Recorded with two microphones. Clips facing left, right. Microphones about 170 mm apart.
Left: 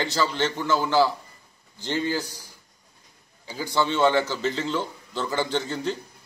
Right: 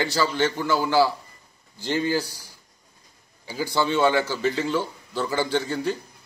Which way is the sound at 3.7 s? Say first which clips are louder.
Even; 10° right (ahead or behind).